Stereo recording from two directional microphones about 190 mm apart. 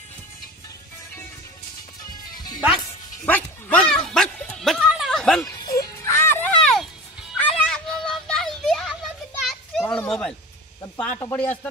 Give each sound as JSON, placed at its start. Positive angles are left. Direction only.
{"t": 2.3, "sound": "music", "side_deg": 20}
{"t": 3.3, "sound": "dog", "side_deg": 10}
{"t": 5.5, "sound": "music", "side_deg": 20}
{"t": 11.1, "sound": "speech", "side_deg": 15}